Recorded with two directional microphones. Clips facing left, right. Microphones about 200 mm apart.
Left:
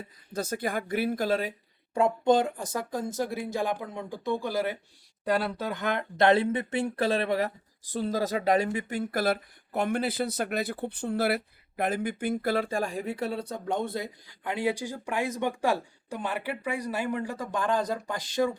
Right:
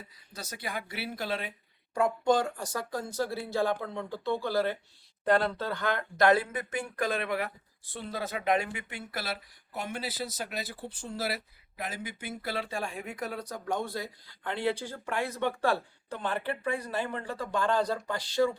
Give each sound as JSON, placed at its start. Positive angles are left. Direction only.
{"t": 0.3, "sound": "speech", "side_deg": 50}
{"t": 2.0, "sound": "speech", "side_deg": 25}